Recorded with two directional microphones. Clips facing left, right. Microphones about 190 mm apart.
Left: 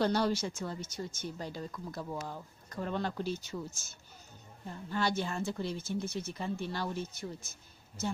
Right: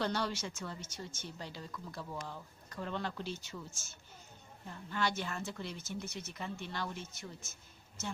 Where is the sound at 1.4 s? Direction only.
45° left (ahead or behind).